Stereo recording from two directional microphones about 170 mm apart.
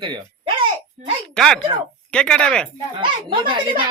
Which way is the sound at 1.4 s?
5° left (ahead or behind).